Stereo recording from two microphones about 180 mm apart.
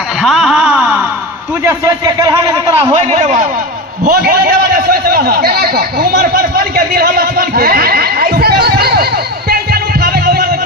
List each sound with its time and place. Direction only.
0.2 s a sound: centre (ahead or behind)
1.6 s a man's voice: 15° right (ahead or behind)
2.9 s speech: 40° right (ahead or behind)
4.1 s a man's voice: 60° right (ahead or behind)
10.0 s music: 55° right (ahead or behind)